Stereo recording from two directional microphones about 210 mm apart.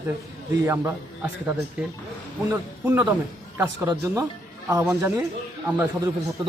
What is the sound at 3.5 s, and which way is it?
A man's voice, 10° right (ahead or behind).